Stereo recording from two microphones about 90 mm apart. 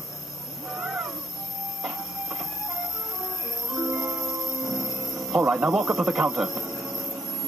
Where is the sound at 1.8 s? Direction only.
5° right (ahead or behind).